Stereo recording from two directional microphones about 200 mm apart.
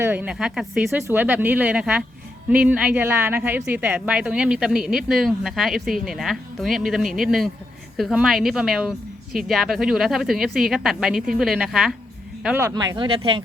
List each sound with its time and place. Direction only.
0.0 s speech: 10° right (ahead or behind)
12.6 s speech: 15° right (ahead or behind)